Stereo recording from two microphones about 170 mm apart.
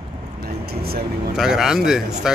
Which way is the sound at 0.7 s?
65° right (ahead or behind).